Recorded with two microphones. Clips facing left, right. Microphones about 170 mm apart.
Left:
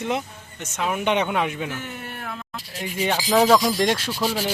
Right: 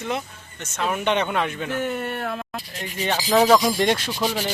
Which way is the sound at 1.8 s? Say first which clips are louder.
Right 8 dB; 55° right (ahead or behind).